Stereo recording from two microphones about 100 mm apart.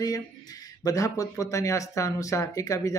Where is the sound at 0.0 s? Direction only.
40° left (ahead or behind).